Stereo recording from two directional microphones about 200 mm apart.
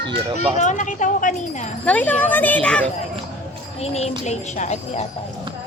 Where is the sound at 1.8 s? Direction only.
5° left (ahead or behind).